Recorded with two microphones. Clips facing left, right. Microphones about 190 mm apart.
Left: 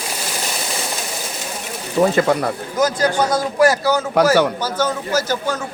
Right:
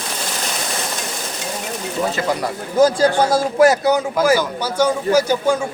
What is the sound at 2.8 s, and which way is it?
A man's voice, 25° right (ahead or behind).